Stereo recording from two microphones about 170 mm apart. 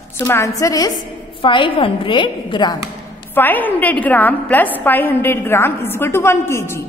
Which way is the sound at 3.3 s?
10° left (ahead or behind).